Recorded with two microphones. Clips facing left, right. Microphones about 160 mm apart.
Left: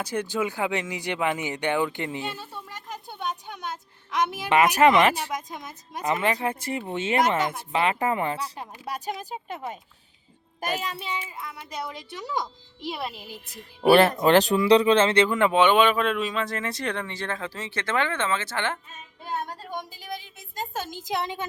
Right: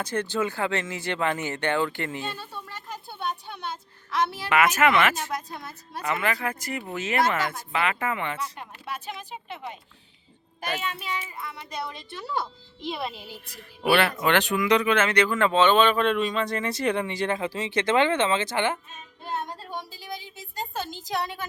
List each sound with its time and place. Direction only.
0.0 s speech: 10° left (ahead or behind)
4.4 s speech: 35° left (ahead or behind)
5.1 s speech: 15° left (ahead or behind)
6.2 s speech: 30° left (ahead or behind)
7.2 s speech: 20° left (ahead or behind)
7.7 s speech: 35° left (ahead or behind)
11.3 s speech: 10° left (ahead or behind)
12.8 s speech: 5° left (ahead or behind)
13.6 s speech: 40° left (ahead or behind); by 18.8 s 15° right (ahead or behind)
19.2 s speech: 15° left (ahead or behind)
21.1 s speech: 20° left (ahead or behind)